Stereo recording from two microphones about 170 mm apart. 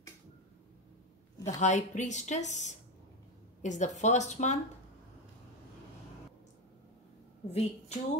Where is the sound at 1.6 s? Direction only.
45° left (ahead or behind).